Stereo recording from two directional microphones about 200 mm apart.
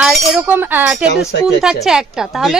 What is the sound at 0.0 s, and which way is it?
Speech, centre (ahead or behind).